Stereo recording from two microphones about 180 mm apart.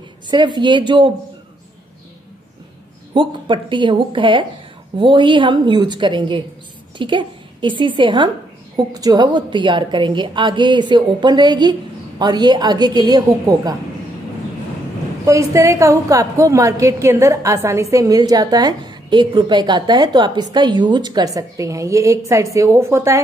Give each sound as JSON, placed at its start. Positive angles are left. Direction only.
{"t": 0.3, "sound": "a woman's voice", "side_deg": -25}
{"t": 3.2, "sound": "a woman's voice", "side_deg": -25}
{"t": 15.2, "sound": "a woman's voice", "side_deg": -15}